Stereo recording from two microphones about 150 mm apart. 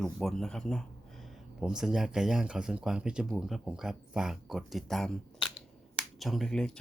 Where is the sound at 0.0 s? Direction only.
5° left (ahead or behind).